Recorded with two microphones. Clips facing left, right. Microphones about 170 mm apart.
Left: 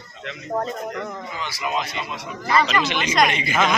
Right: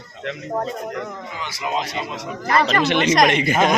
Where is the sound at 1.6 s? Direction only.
30° right (ahead or behind).